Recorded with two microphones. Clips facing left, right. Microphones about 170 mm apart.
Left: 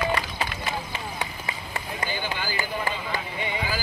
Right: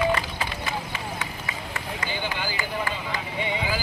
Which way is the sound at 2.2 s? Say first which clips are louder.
Even; 20° right (ahead or behind).